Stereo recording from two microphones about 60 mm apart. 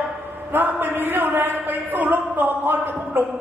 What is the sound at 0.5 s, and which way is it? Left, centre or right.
Speech, right.